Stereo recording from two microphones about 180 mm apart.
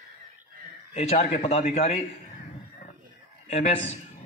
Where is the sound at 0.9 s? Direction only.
35° left (ahead or behind).